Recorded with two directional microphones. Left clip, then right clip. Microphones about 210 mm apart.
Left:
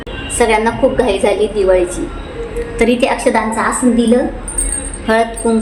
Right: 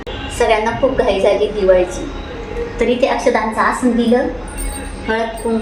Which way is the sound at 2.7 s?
50° left (ahead or behind).